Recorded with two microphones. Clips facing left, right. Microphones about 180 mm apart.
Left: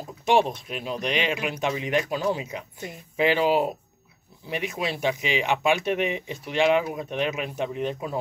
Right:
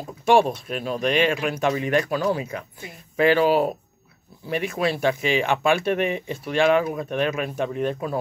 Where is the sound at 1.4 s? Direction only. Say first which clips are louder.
Right 4 dB; 50° right (ahead or behind).